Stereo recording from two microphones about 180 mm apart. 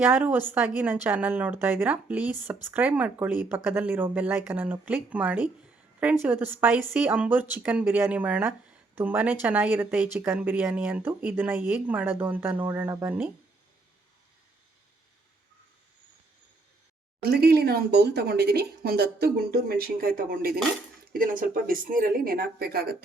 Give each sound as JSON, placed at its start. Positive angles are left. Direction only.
{"t": 0.0, "sound": "speech", "side_deg": -10}
{"t": 17.2, "sound": "speech", "side_deg": -60}